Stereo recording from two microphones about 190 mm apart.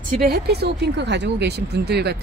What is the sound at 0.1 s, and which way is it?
Speech, 55° right (ahead or behind).